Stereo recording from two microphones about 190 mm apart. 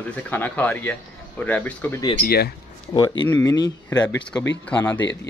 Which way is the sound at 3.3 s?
20° left (ahead or behind).